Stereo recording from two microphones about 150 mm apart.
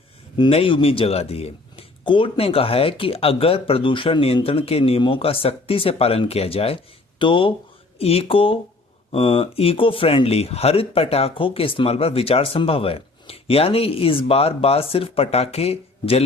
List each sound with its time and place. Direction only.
0.3 s speech: 35° left (ahead or behind)